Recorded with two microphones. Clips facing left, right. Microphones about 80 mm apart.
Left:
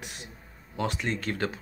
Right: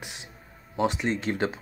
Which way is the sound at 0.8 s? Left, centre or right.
Right.